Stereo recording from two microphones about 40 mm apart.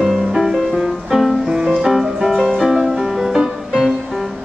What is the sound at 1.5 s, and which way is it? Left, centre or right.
Music, right.